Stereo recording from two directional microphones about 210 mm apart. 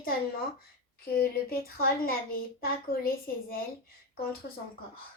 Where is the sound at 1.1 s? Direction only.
45° left (ahead or behind).